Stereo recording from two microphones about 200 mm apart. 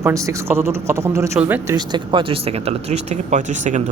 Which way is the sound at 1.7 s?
20° right (ahead or behind).